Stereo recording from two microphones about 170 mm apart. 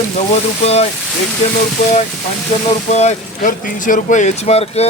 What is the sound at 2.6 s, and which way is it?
Speech, 40° left (ahead or behind).